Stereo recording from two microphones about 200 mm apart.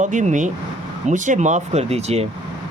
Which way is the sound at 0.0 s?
40° right (ahead or behind).